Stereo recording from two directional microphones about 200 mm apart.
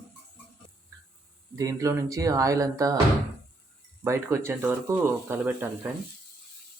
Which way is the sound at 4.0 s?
15° right (ahead or behind).